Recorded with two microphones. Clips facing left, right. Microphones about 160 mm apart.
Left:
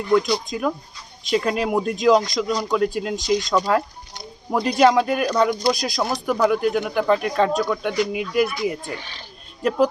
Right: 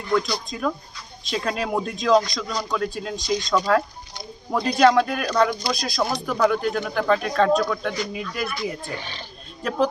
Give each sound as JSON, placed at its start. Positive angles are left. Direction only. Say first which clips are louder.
{"t": 0.1, "sound": "speech", "louder": "left 4 dB", "side_deg": 20}